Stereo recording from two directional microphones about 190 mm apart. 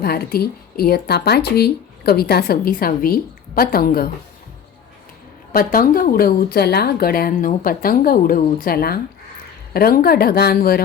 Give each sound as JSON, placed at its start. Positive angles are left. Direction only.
{"t": 0.0, "sound": "speech", "side_deg": 55}
{"t": 5.5, "sound": "speech", "side_deg": 50}